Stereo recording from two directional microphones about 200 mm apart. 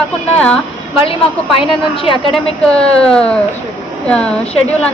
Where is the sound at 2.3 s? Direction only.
5° left (ahead or behind).